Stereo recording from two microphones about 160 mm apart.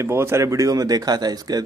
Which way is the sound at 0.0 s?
15° right (ahead or behind).